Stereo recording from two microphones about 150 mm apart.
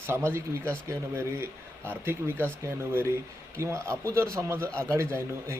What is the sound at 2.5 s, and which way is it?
A man's voice, 15° right (ahead or behind).